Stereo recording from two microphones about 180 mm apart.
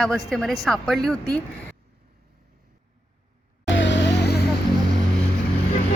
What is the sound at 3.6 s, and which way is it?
Vehicle, 85° left.